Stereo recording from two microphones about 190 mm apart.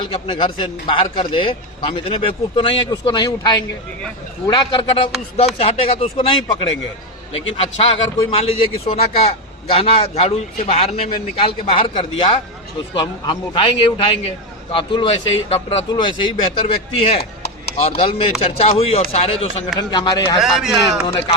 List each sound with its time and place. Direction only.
0.1 s a man's voice: 25° left (ahead or behind)
17.2 s chop: 55° left (ahead or behind)
17.7 s a man's voice: 30° left (ahead or behind)
20.4 s speech: centre (ahead or behind)